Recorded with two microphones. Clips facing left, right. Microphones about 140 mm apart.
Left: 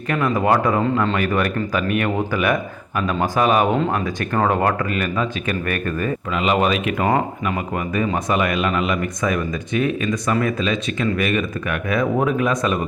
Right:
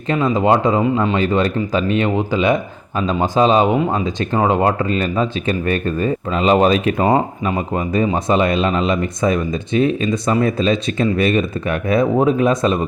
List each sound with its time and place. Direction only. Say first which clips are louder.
0.1 s speech: right 3 dB; 20° right (ahead or behind)